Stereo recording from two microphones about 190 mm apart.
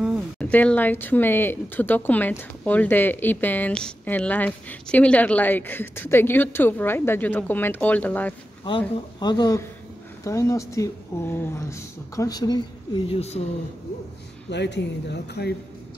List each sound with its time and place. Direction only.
0.4 s speech: 10° left (ahead or behind)
8.6 s speech: 25° left (ahead or behind)
14.5 s speech: 65° left (ahead or behind)